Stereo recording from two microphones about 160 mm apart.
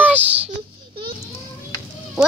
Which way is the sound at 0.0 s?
10° right (ahead or behind).